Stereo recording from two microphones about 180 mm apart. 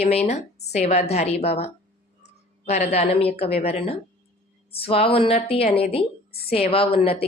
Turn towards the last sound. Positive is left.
turn(degrees=30)  # may be behind; listen again after turning